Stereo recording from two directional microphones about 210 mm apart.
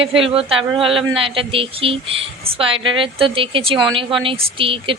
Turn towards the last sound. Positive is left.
turn(degrees=-25)  # may be behind; listen again after turning